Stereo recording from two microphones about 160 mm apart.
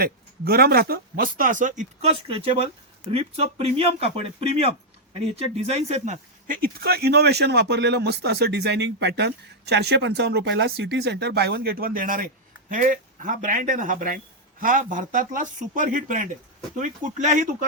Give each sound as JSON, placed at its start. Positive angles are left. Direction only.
{"t": 0.0, "sound": "speech", "side_deg": -75}
{"t": 6.6, "sound": "speech", "side_deg": -75}